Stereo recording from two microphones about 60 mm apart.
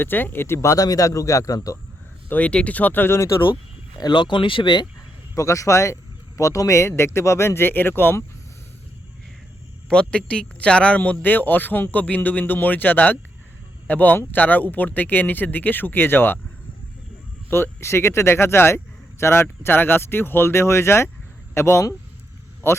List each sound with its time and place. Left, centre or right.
0.0 s speech: left
2.3 s speech: centre; by 3.2 s left
4.0 s speech: left
5.3 s speech: left
9.9 s speech: centre; by 16.4 s left
17.5 s speech: left